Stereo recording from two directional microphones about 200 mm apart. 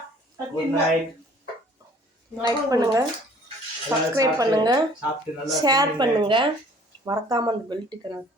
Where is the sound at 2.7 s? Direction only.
15° right (ahead or behind).